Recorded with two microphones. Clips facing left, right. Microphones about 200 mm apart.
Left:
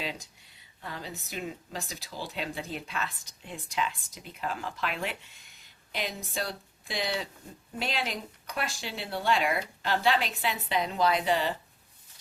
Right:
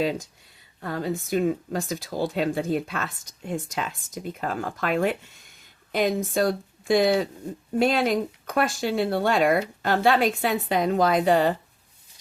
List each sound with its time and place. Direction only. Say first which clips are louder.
0.0 s speech: right 12 dB; 45° right (ahead or behind)